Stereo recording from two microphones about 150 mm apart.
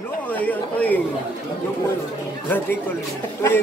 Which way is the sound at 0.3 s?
10° left (ahead or behind).